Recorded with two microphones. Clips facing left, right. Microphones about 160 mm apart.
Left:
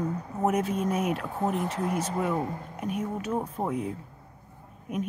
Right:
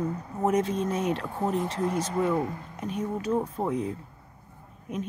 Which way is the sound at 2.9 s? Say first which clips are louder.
Right 1 dB; 30° right (ahead or behind).